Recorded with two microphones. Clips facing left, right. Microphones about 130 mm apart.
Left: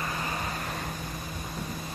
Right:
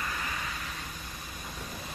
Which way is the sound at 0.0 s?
30° left (ahead or behind).